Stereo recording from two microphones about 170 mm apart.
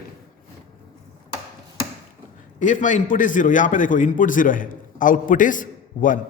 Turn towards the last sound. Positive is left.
turn(degrees=50)  # may be behind; listen again after turning